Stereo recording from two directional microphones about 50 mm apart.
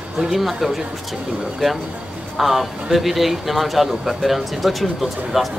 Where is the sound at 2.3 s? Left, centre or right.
Centre.